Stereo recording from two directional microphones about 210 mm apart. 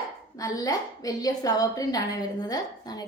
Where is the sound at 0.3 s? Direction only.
15° left (ahead or behind).